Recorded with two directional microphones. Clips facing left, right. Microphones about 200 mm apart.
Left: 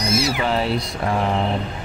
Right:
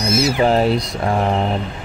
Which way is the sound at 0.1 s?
45° right (ahead or behind).